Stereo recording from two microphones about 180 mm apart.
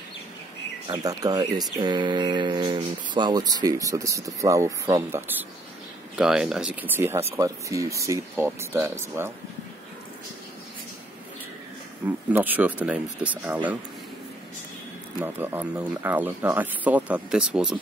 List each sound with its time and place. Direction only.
1.0 s speech: 20° right (ahead or behind)
12.3 s speech: 10° right (ahead or behind)
15.2 s speech: 10° right (ahead or behind)